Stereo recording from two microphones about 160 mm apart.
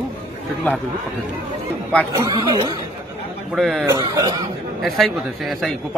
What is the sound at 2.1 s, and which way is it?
Speech, 25° right (ahead or behind).